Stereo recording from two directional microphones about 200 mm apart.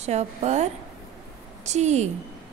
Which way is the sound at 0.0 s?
35° right (ahead or behind).